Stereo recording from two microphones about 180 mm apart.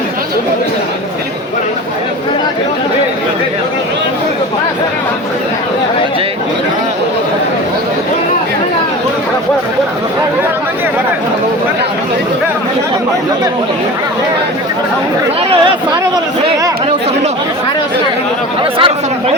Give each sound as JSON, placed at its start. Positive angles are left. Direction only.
{"t": 18.6, "sound": "speech", "side_deg": -30}